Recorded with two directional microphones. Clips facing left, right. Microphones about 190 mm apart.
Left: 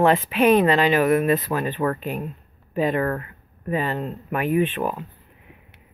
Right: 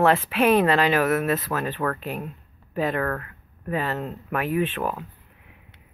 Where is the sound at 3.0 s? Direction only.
15° left (ahead or behind).